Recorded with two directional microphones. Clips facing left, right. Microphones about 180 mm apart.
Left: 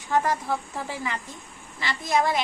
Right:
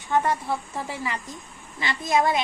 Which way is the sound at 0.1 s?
Centre (ahead or behind).